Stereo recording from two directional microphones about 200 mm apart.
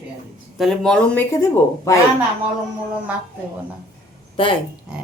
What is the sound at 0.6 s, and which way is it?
Speech, 5° left (ahead or behind).